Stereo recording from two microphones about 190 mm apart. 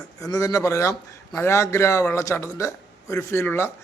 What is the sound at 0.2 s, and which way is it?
A man's voice, 20° left (ahead or behind).